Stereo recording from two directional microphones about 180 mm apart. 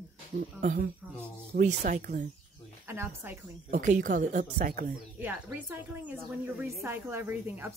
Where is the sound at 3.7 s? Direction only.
45° right (ahead or behind).